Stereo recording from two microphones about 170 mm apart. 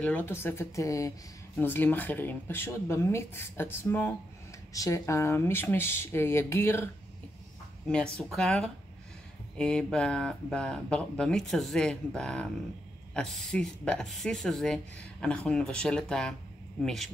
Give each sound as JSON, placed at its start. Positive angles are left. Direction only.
{"t": 0.0, "sound": "speech", "side_deg": 10}
{"t": 7.9, "sound": "speech", "side_deg": 5}